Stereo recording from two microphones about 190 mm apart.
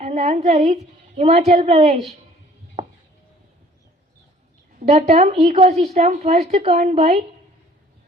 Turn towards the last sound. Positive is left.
turn(degrees=-35)  # may be behind; listen again after turning